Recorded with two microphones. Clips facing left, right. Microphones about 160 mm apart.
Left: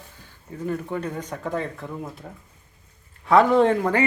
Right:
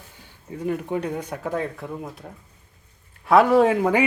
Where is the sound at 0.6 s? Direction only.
15° right (ahead or behind).